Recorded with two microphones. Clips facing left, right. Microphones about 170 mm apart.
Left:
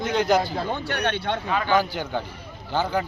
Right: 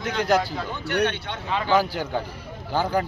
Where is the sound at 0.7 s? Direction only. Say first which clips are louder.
Right 1 dB; 60° left (ahead or behind).